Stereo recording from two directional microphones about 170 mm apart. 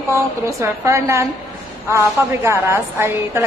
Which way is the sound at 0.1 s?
15° right (ahead or behind).